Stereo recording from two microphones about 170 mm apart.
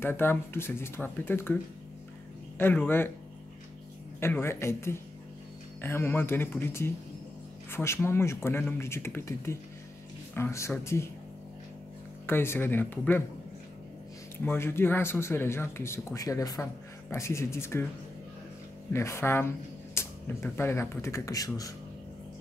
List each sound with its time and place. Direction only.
0.0 s speech: 10° left (ahead or behind)
2.6 s speech: 10° left (ahead or behind)
4.2 s speech: 15° left (ahead or behind)
12.3 s speech: 15° left (ahead or behind)
14.4 s speech: 15° left (ahead or behind)
18.9 s speech: 15° left (ahead or behind)